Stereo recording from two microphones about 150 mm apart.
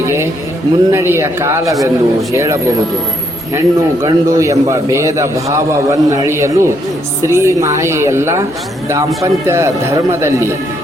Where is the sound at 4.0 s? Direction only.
20° right (ahead or behind).